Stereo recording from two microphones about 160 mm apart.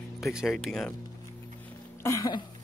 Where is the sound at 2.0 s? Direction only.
20° left (ahead or behind).